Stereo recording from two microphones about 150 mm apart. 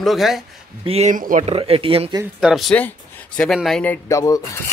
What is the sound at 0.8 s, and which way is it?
Speech, 45° right (ahead or behind).